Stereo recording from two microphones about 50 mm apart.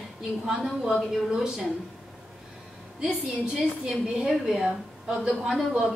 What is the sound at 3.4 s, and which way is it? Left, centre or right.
A woman's voice, centre.